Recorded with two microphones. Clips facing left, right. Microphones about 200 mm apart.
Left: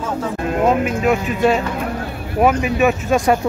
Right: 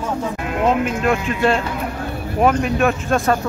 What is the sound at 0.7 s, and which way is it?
Speech, 5° left (ahead or behind).